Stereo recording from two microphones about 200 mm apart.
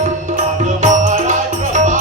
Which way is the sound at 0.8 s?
40° right (ahead or behind).